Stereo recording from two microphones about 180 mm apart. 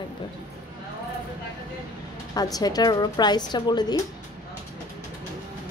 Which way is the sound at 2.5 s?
20° left (ahead or behind).